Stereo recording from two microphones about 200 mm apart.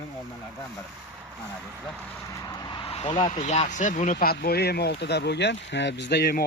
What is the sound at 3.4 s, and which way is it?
Speech, 35° left (ahead or behind).